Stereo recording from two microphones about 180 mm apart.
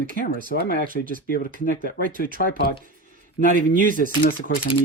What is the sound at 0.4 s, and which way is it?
Speech, 65° left (ahead or behind).